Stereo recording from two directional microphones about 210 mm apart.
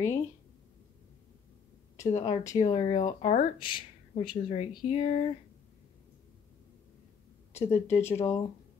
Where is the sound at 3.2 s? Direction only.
40° left (ahead or behind).